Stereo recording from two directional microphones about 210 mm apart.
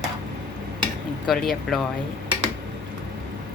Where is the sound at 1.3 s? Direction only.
Centre (ahead or behind).